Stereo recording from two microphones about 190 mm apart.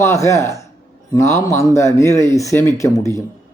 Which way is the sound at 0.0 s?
15° left (ahead or behind).